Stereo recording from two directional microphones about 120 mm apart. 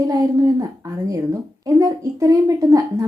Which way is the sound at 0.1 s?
30° right (ahead or behind).